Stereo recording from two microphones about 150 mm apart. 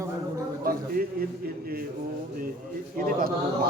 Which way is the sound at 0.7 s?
75° right (ahead or behind).